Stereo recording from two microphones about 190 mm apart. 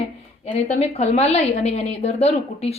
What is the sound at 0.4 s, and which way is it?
A woman's voice, 35° left (ahead or behind).